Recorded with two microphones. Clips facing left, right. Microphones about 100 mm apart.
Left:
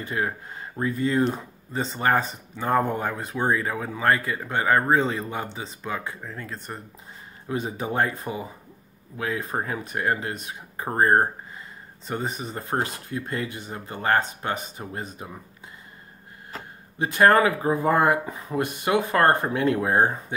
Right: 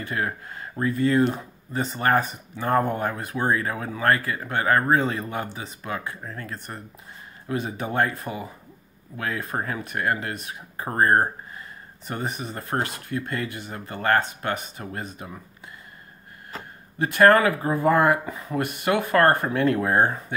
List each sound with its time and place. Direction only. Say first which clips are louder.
0.1 s speech: left 1 dB; 20° left (ahead or behind)
17.2 s speech: right 1 dB; 20° left (ahead or behind)